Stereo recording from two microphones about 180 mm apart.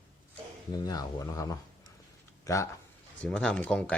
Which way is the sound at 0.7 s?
20° left (ahead or behind).